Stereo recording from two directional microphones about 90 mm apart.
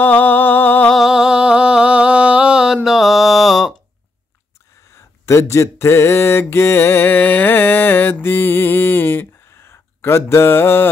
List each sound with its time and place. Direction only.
0.0 s a sound: 20° left (ahead or behind)
0.9 s music: 5° right (ahead or behind)
4.9 s mantra: 30° left (ahead or behind)